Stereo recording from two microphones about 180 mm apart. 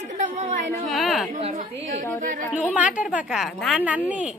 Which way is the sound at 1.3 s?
45° right (ahead or behind).